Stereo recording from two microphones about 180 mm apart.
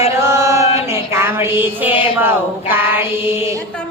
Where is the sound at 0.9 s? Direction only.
15° right (ahead or behind).